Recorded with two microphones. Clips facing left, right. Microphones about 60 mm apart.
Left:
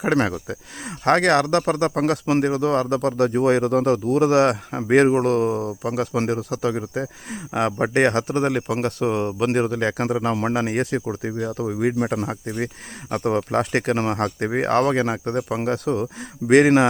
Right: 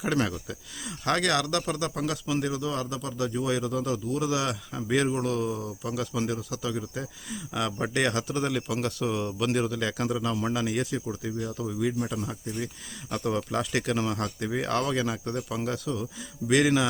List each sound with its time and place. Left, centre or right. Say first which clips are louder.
0.0 s speech: left 7 dB; left
13.1 s speech: left 7 dB; left